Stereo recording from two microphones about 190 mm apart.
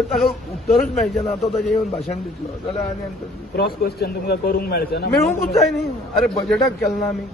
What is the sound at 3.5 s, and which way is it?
A man's voice, 55° left (ahead or behind).